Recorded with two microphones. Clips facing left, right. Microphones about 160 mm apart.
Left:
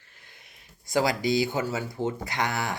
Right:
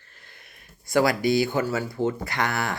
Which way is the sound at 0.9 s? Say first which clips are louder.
Right 3 dB; 60° right (ahead or behind).